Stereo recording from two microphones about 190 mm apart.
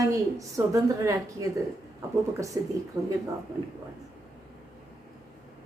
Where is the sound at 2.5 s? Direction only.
15° right (ahead or behind).